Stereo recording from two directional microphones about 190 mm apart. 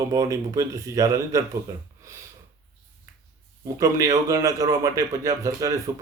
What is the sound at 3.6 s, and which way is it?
A man's voice, 15° right (ahead or behind).